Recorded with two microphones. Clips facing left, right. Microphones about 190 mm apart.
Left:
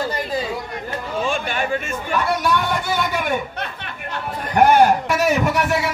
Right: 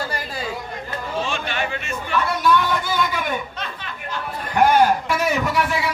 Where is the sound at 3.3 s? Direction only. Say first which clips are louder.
Left 3 dB; 60° left (ahead or behind).